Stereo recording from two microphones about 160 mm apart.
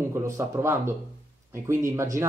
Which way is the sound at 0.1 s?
15° right (ahead or behind).